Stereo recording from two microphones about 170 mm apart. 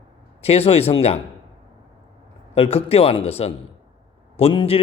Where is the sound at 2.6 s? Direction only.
35° left (ahead or behind).